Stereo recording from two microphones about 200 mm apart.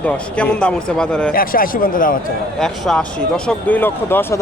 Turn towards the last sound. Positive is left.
turn(degrees=10)  # may be behind; listen again after turning